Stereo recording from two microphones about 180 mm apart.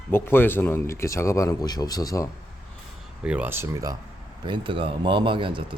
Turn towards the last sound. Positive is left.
turn(degrees=-30)  # may be behind; listen again after turning